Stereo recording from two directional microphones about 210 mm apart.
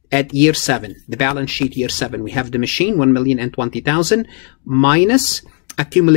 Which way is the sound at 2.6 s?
45° left (ahead or behind).